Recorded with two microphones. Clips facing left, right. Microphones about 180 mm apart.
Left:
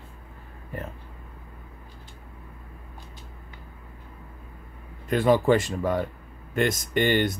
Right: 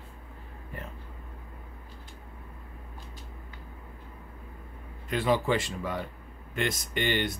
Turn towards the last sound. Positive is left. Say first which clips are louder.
# left 6 dB
turn(degrees=45)  # may be behind; listen again after turning